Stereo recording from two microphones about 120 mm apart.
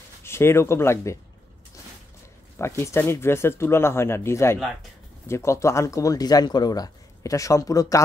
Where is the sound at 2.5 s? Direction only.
20° left (ahead or behind).